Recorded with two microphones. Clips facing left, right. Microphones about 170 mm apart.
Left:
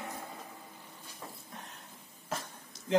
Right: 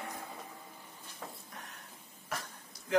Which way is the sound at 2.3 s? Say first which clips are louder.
Left 2 dB; 25° left (ahead or behind).